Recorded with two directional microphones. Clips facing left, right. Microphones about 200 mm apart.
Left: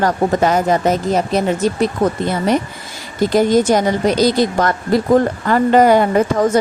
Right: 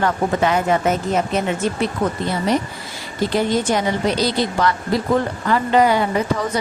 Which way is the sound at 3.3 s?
45° left (ahead or behind).